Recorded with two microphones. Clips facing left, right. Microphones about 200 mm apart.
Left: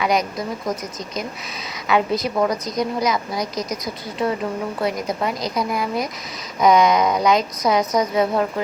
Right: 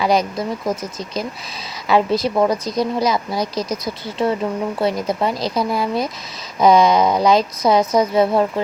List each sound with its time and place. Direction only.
0.0 s a woman's voice: 30° right (ahead or behind)
4.8 s a woman's voice: 30° right (ahead or behind)